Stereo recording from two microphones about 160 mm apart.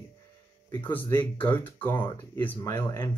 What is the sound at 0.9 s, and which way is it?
Speech, 10° left (ahead or behind).